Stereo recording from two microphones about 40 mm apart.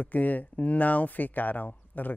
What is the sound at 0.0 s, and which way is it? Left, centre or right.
Speech, left.